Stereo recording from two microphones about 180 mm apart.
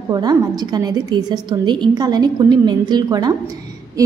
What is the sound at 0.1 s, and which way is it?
A woman's voice, 20° right (ahead or behind).